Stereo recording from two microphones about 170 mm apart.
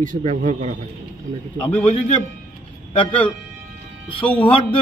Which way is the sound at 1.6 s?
10° left (ahead or behind).